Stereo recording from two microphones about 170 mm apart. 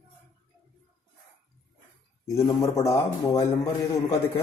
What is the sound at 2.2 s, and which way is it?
Speech, 20° left (ahead or behind).